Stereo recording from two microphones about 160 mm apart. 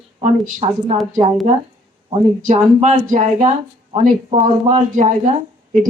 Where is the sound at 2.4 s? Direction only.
50° right (ahead or behind).